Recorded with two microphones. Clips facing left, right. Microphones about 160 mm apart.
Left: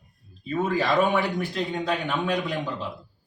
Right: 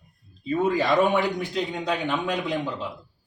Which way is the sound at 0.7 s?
20° right (ahead or behind).